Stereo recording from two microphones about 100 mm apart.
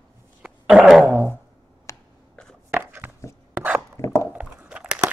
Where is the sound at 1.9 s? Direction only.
30° left (ahead or behind).